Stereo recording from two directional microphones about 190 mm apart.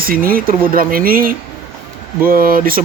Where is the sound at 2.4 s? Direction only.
50° right (ahead or behind).